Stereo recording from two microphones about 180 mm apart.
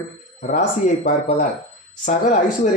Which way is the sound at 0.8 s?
45° left (ahead or behind).